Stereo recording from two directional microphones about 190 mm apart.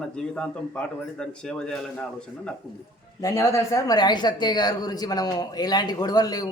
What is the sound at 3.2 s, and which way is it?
Speech, 15° left (ahead or behind).